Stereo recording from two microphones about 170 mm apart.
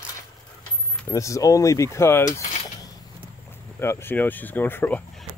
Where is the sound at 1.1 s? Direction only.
20° left (ahead or behind).